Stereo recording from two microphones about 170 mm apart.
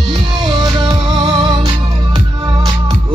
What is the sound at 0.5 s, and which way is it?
Music, 25° right (ahead or behind).